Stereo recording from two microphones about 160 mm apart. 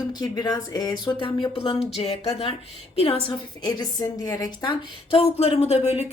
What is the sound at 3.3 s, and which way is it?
Speech, 25° left (ahead or behind).